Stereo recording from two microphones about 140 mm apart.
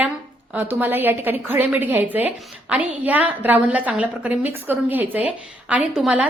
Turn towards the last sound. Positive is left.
turn(degrees=-5)  # may be behind; listen again after turning